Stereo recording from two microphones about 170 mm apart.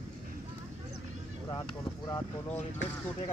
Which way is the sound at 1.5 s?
20° left (ahead or behind).